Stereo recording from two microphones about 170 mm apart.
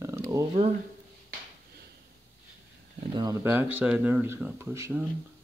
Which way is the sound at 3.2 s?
20° right (ahead or behind).